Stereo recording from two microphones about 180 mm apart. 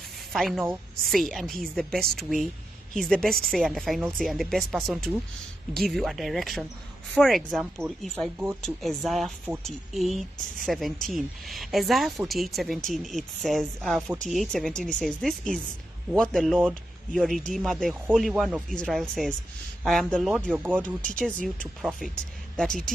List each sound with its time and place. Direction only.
0.3 s speech: centre (ahead or behind)
21.2 s speech: 5° left (ahead or behind)